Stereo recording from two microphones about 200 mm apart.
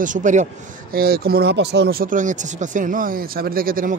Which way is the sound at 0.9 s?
50° right (ahead or behind).